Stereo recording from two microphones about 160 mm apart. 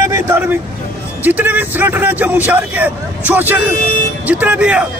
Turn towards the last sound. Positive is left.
turn(degrees=-10)  # may be behind; listen again after turning